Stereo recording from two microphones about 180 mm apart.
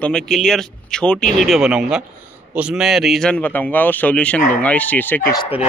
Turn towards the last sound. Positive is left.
turn(degrees=25)  # may be behind; listen again after turning